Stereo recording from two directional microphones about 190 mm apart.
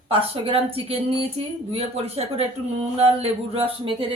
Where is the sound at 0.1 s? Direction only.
30° right (ahead or behind).